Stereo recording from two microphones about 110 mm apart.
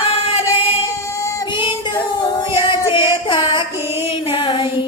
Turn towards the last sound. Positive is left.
turn(degrees=45)  # may be behind; listen again after turning